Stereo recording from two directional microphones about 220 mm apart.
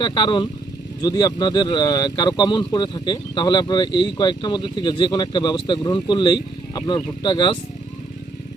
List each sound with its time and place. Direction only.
0.0 s speech: 20° left (ahead or behind)